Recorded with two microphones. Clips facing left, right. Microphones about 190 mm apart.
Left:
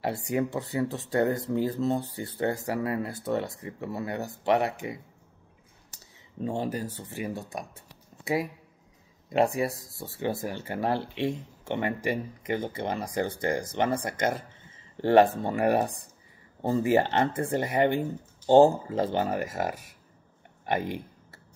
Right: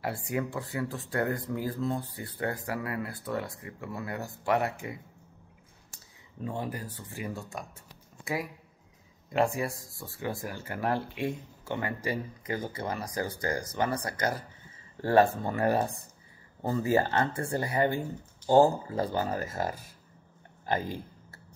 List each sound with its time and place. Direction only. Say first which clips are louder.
0.0 s speech: left 4 dB; 25° left (ahead or behind)
6.4 s speech: left 5 dB; 25° left (ahead or behind)
9.3 s speech: left 3 dB; 20° left (ahead or behind)
20.6 s speech: left 2 dB; 20° left (ahead or behind)